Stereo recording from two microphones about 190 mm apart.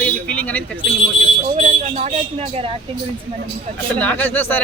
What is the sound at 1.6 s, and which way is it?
Speech, 35° right (ahead or behind).